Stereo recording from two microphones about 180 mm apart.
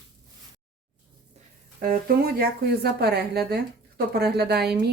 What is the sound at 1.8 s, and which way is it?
A woman's voice, 55° right (ahead or behind).